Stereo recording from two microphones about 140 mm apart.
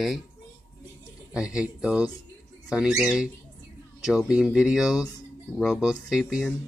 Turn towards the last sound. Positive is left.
turn(degrees=-5)  # may be behind; listen again after turning